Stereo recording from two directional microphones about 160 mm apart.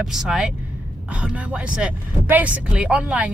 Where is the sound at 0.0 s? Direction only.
5° right (ahead or behind).